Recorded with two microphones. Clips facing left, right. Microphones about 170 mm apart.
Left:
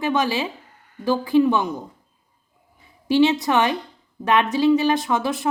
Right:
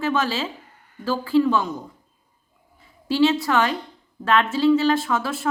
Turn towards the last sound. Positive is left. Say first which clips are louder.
# left 2 dB
turn(degrees=20)  # may be behind; listen again after turning